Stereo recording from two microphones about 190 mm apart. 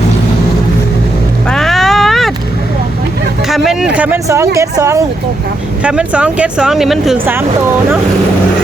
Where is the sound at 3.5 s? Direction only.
5° right (ahead or behind).